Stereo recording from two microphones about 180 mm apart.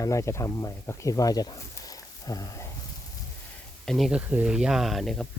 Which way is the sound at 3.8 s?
Centre (ahead or behind).